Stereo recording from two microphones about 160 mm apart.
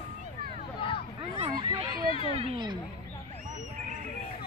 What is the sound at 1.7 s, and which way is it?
Speech, 25° right (ahead or behind).